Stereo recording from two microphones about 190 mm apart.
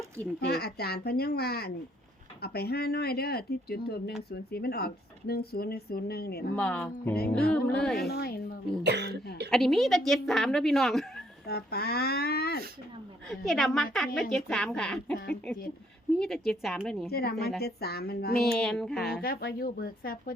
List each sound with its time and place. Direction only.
0.3 s speech: 55° left (ahead or behind)
6.6 s music: 5° left (ahead or behind)
7.9 s a woman's voice: 55° left (ahead or behind)
8.8 s cough: 60° right (ahead or behind)
9.5 s a woman's voice: centre (ahead or behind)
11.4 s a sound: 55° left (ahead or behind)
13.2 s a woman's voice: centre (ahead or behind)
16.1 s a woman's voice: centre (ahead or behind)
17.1 s speech: 55° left (ahead or behind)
18.5 s a woman's voice: 5° left (ahead or behind)
19.2 s a woman's voice: 50° left (ahead or behind)